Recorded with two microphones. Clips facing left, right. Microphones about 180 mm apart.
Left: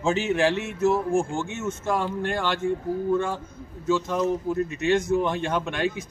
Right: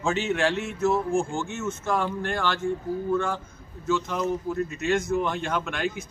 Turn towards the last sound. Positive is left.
turn(degrees=20)  # may be behind; listen again after turning